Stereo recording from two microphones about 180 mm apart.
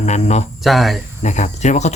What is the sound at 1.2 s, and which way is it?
Speech, 40° left (ahead or behind).